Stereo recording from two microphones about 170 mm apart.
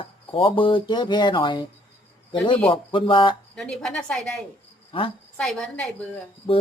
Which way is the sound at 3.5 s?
5° left (ahead or behind).